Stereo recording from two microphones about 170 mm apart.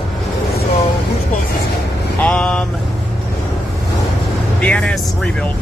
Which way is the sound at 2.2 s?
5° left (ahead or behind).